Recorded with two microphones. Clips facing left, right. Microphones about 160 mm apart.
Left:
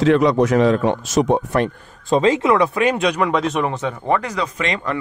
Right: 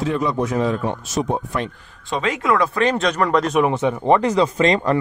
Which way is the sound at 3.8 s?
25° right (ahead or behind).